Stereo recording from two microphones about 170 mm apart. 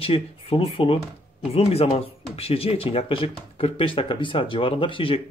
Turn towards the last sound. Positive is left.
turn(degrees=30)  # may be behind; listen again after turning